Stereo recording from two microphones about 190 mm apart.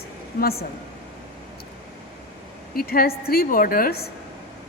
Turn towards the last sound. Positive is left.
turn(degrees=50)  # may be behind; listen again after turning